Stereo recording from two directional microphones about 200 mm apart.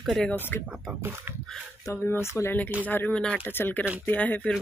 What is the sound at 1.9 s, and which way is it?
Speech, 15° left (ahead or behind).